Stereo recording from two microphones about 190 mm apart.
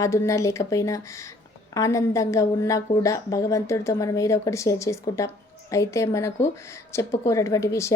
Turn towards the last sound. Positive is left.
turn(degrees=15)  # may be behind; listen again after turning